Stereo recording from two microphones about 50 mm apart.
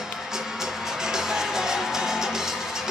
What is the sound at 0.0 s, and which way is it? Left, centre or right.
Music, centre.